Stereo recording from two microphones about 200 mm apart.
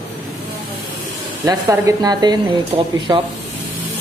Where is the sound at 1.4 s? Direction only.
15° right (ahead or behind).